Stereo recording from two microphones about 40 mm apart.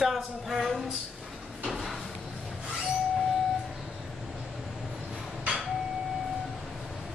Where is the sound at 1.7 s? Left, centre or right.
Centre.